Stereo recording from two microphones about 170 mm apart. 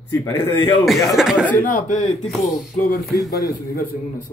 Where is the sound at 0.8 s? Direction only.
Centre (ahead or behind).